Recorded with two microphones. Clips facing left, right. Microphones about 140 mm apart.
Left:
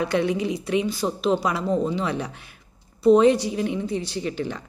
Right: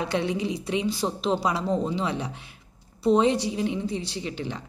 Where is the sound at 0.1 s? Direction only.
25° right (ahead or behind).